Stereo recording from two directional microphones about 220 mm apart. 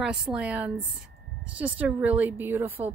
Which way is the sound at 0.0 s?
5° right (ahead or behind).